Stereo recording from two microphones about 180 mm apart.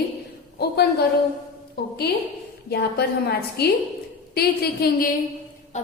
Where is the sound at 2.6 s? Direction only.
65° left (ahead or behind).